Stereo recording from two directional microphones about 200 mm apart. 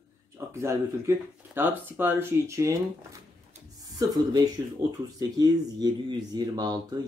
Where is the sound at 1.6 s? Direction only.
10° right (ahead or behind).